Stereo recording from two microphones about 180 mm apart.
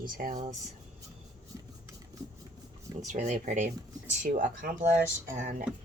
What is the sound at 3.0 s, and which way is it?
Speech, 40° right (ahead or behind).